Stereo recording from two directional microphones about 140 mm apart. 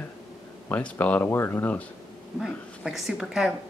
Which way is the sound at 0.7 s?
10° left (ahead or behind).